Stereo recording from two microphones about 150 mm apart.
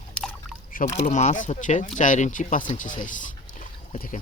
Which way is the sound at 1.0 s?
55° left (ahead or behind).